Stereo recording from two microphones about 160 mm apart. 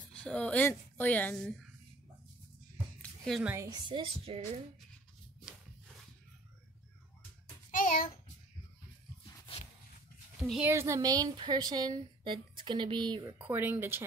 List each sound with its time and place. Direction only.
0.1 s speech: 5° left (ahead or behind)
3.0 s a sound: centre (ahead or behind)
3.4 s speech: 15° right (ahead or behind)
3.8 s speech: 35° right (ahead or behind)
7.7 s child singing: 55° left (ahead or behind)
10.6 s a woman's voice: 15° right (ahead or behind)
13.5 s speech: 15° right (ahead or behind)